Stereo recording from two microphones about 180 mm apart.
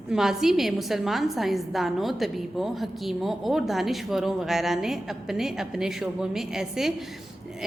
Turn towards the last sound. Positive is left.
turn(degrees=0)  # may be behind; listen again after turning